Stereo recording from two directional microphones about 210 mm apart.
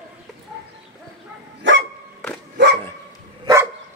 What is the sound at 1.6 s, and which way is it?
Dog, 60° right (ahead or behind).